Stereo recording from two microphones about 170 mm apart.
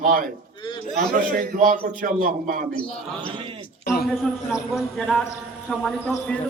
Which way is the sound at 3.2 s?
30° right (ahead or behind).